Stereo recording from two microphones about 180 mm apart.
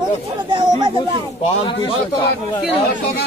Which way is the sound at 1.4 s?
30° left (ahead or behind).